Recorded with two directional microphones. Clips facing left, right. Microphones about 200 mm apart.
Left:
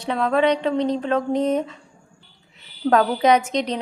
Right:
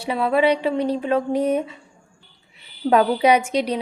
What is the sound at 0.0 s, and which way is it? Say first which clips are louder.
A woman's voice: right 1 dB; 10° right (ahead or behind).